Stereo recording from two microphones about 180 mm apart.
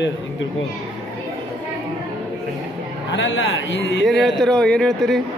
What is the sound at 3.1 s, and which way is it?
Speech, 90° left.